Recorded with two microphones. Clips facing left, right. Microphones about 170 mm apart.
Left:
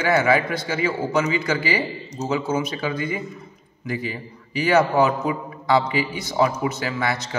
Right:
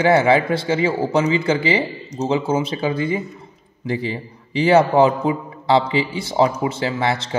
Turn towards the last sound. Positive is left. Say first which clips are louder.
# right 4 dB
turn(degrees=-25)  # may be behind; listen again after turning